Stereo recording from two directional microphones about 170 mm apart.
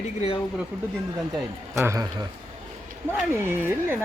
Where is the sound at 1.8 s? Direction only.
15° right (ahead or behind).